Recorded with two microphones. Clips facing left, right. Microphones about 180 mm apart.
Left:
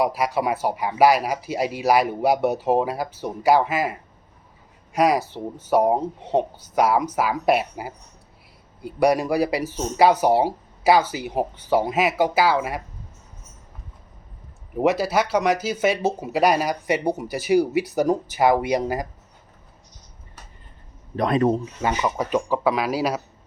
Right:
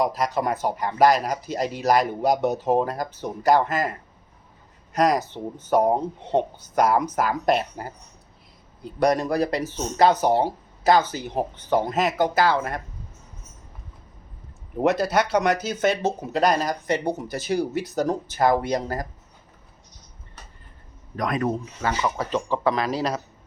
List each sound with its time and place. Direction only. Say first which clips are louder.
0.0 s speech: left 1 dB; 10° left (ahead or behind)
14.8 s speech: left 1 dB; 5° left (ahead or behind)
21.2 s speech: left 5 dB; 30° left (ahead or behind)
21.8 s speech: left 2 dB; 15° left (ahead or behind)